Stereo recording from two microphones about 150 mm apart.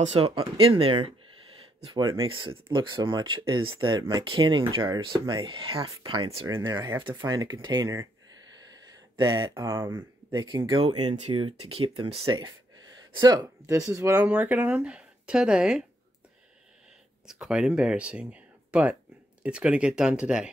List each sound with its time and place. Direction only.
0.0 s speech: 40° right (ahead or behind); by 8.1 s 25° right (ahead or behind)
9.1 s speech: 30° right (ahead or behind)
12.4 s speech: 25° right (ahead or behind); by 15.8 s 5° right (ahead or behind)
17.3 s speech: 5° right (ahead or behind)